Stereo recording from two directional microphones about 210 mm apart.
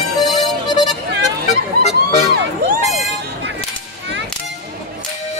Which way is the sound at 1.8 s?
35° left (ahead or behind).